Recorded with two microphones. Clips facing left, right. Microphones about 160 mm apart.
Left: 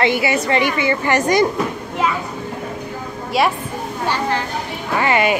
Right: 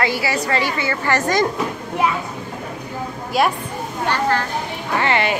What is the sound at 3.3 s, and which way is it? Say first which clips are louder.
Speech: left 1 dB; centre (ahead or behind).